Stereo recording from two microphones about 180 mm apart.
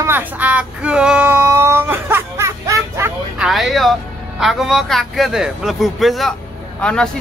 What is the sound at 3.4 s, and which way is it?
A man's voice, centre (ahead or behind).